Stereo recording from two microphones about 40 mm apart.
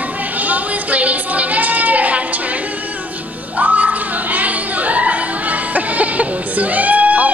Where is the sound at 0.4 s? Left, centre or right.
Right.